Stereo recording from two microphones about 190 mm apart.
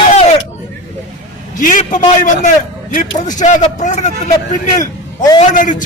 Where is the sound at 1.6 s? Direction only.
45° left (ahead or behind).